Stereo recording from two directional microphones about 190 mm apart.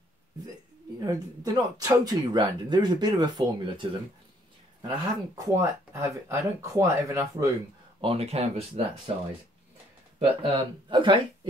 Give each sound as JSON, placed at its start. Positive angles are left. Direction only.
{"t": 0.9, "sound": "speech", "side_deg": -20}
{"t": 4.8, "sound": "speech", "side_deg": -15}
{"t": 8.0, "sound": "speech", "side_deg": -30}
{"t": 10.1, "sound": "speech", "side_deg": -25}